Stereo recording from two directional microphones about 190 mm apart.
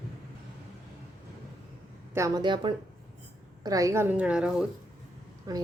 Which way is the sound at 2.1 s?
20° right (ahead or behind).